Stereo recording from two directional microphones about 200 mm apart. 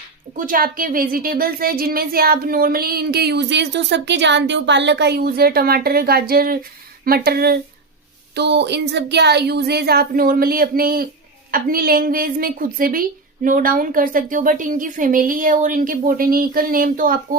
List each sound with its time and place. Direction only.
0.3 s speech: 45° right (ahead or behind)